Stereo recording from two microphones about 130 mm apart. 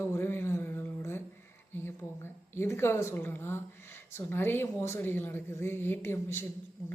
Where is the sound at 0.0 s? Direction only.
20° left (ahead or behind).